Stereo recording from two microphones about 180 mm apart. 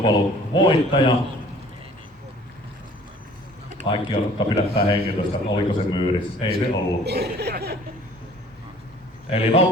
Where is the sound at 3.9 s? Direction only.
25° left (ahead or behind).